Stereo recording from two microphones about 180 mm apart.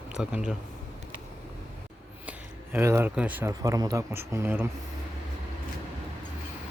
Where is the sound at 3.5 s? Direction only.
20° right (ahead or behind).